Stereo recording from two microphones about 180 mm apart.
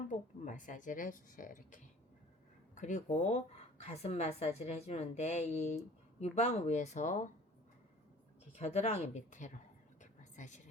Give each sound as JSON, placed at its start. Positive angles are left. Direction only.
{"t": 0.1, "sound": "a woman's voice", "side_deg": 45}
{"t": 8.5, "sound": "a woman's voice", "side_deg": 35}
{"t": 10.0, "sound": "whispering", "side_deg": 40}